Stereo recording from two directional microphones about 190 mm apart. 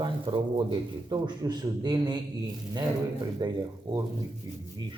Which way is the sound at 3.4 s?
20° right (ahead or behind).